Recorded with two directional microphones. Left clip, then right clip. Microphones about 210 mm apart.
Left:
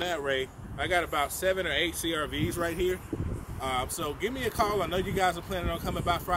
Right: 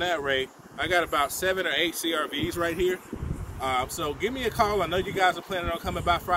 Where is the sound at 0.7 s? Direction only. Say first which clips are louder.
Right 3 dB; 55° right (ahead or behind).